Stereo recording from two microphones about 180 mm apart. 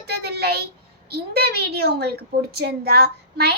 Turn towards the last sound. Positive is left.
turn(degrees=-60)  # may be behind; listen again after turning